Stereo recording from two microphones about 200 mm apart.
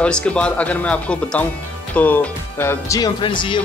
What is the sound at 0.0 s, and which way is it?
Speech, 5° left (ahead or behind).